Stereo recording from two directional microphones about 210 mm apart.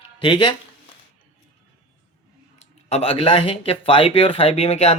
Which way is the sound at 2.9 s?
25° left (ahead or behind).